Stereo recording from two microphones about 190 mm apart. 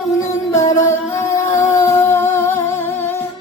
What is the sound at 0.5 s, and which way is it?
Music, 15° left (ahead or behind).